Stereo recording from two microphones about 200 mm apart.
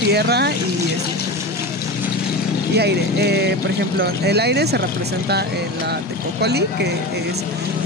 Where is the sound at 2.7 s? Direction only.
55° right (ahead or behind).